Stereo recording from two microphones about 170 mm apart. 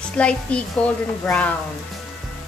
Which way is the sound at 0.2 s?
5° left (ahead or behind).